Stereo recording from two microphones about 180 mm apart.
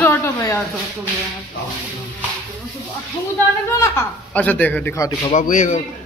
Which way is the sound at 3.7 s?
15° left (ahead or behind).